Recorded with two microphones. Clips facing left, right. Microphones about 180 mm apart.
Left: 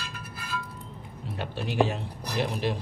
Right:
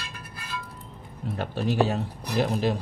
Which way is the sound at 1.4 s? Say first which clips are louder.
Right 2 dB; 40° right (ahead or behind).